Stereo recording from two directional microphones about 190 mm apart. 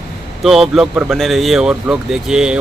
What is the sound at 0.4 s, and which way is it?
Speech, centre (ahead or behind).